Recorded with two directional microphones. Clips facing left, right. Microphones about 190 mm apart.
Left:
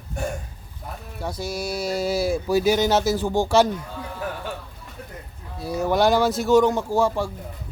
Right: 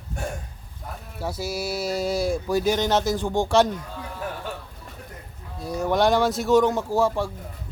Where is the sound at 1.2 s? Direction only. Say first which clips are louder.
Even; 5° right (ahead or behind).